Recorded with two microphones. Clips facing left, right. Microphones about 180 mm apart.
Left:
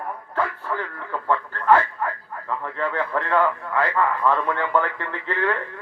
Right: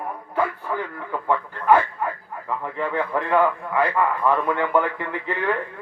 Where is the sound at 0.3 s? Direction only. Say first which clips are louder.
Right 2 dB; 15° right (ahead or behind).